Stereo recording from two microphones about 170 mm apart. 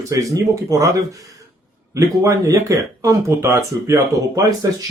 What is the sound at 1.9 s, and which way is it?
Speech, 20° right (ahead or behind).